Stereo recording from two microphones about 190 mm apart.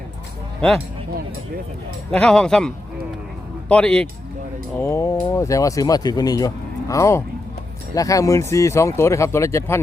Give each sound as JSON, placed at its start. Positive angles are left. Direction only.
{"t": 2.0, "sound": "speech", "side_deg": 5}
{"t": 4.8, "sound": "speech", "side_deg": 15}